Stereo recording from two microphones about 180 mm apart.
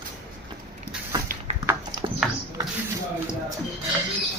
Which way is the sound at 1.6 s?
25° right (ahead or behind).